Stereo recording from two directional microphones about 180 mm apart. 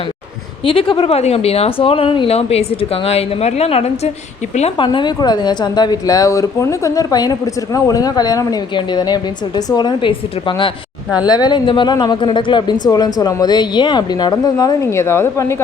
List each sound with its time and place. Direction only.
0.6 s speech: 30° left (ahead or behind)
4.9 s speech: 25° left (ahead or behind)